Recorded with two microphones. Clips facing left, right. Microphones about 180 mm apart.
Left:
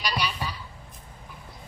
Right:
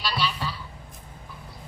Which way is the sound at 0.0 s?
15° left (ahead or behind).